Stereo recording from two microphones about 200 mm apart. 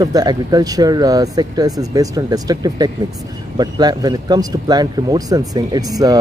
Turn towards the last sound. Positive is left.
turn(degrees=-20)  # may be behind; listen again after turning